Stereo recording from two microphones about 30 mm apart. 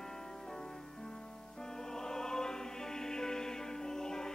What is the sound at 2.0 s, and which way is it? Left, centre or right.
Choir, left.